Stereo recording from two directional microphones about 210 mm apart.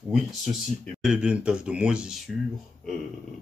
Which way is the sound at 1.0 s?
5° right (ahead or behind).